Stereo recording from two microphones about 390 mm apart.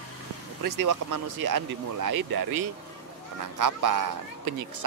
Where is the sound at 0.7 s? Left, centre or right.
Right.